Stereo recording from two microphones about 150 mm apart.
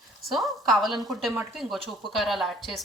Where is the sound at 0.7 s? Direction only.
Centre (ahead or behind).